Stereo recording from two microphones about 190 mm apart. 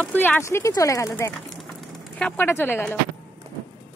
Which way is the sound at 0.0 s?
10° left (ahead or behind).